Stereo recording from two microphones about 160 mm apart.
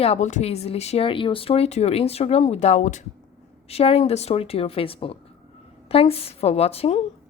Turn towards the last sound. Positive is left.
turn(degrees=40)  # may be behind; listen again after turning